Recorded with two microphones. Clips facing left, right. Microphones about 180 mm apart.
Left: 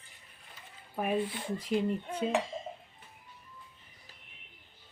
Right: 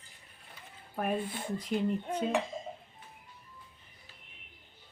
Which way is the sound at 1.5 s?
5° left (ahead or behind).